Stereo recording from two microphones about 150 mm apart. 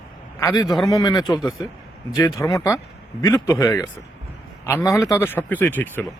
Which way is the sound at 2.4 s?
20° left (ahead or behind).